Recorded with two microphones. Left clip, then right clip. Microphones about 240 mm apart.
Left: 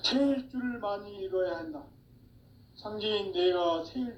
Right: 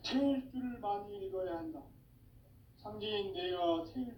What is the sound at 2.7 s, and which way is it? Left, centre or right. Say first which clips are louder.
A man's voice: left 7 dB; left.